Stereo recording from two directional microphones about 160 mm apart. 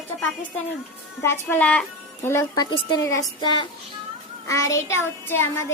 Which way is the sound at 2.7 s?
30° left (ahead or behind).